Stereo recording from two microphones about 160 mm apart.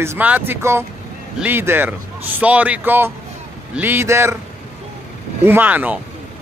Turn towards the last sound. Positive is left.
turn(degrees=-10)  # may be behind; listen again after turning